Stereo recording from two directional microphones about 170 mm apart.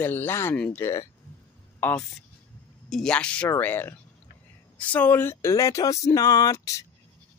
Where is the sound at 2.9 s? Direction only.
5° left (ahead or behind).